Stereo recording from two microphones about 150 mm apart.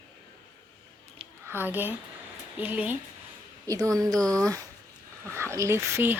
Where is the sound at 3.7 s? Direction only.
25° right (ahead or behind).